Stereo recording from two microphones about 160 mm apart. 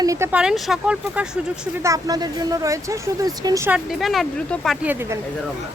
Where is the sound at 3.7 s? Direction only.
Centre (ahead or behind).